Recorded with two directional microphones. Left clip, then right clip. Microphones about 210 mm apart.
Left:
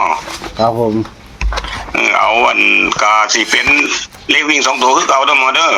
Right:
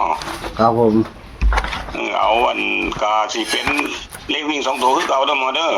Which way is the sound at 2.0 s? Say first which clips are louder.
Left 6 dB; 15° left (ahead or behind).